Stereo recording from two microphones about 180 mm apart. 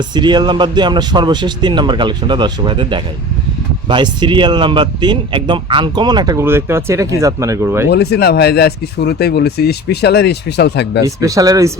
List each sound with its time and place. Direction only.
0.1 s speech: 25° right (ahead or behind)
7.9 s speech: 65° left (ahead or behind)
11.0 s speech: 20° right (ahead or behind)